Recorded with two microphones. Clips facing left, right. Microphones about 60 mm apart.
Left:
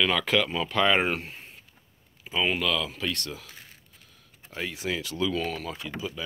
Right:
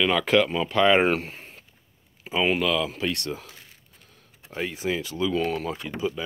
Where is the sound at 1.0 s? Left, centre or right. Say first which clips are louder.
Right 5 dB; right.